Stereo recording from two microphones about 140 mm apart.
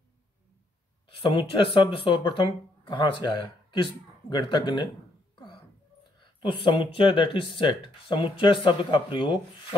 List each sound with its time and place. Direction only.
1.0 s speech: 40° left (ahead or behind)
6.2 s speech: 35° left (ahead or behind)